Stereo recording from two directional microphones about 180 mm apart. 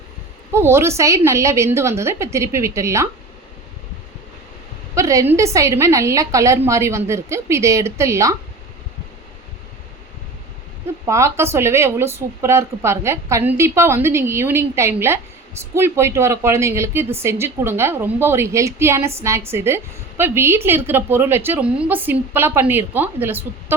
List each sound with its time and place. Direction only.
0.5 s speech: 15° right (ahead or behind)
4.9 s speech: 15° right (ahead or behind)
11.0 s speech: 15° right (ahead or behind)